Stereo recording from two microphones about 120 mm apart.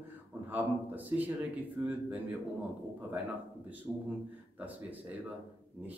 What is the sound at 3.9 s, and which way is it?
Speech, 5° right (ahead or behind).